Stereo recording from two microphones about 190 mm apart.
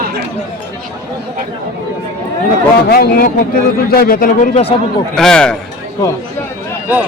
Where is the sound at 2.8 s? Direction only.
55° left (ahead or behind).